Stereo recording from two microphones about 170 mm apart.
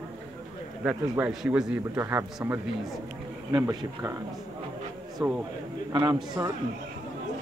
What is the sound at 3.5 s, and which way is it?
Speech, 25° right (ahead or behind).